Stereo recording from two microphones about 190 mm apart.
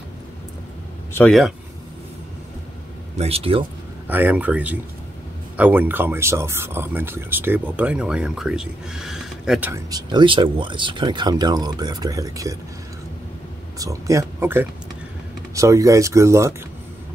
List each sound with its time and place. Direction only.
1.1 s speech: 5° left (ahead or behind)
3.2 s speech: 30° right (ahead or behind)
4.1 s speech: 10° right (ahead or behind)
9.7 s speech: 20° right (ahead or behind)
13.7 s speech: 15° right (ahead or behind)